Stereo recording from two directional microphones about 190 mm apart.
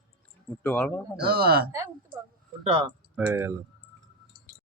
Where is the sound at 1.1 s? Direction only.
55° right (ahead or behind).